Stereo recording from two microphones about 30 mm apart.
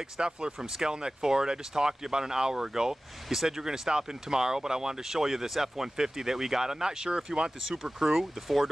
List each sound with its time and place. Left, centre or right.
0.2 s speech: right; by 8.6 s centre